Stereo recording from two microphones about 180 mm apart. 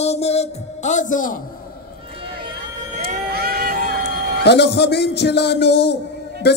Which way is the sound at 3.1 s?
50° right (ahead or behind).